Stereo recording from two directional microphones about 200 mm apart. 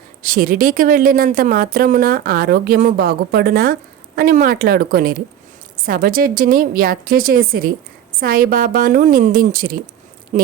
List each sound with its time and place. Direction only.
0.2 s a woman's voice: 45° right (ahead or behind)
10.3 s speech: 35° right (ahead or behind)